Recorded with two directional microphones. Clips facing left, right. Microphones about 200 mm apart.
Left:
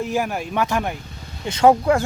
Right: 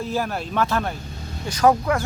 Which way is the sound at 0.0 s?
15° left (ahead or behind).